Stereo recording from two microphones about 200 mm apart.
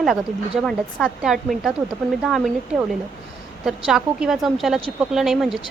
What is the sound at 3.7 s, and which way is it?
Speech, centre (ahead or behind).